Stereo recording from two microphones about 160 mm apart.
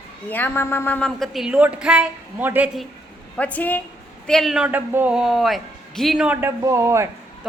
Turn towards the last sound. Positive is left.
turn(degrees=-15)  # may be behind; listen again after turning